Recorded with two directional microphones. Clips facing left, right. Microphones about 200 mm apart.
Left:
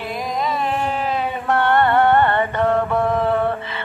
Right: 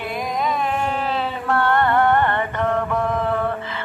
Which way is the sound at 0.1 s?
Centre (ahead or behind).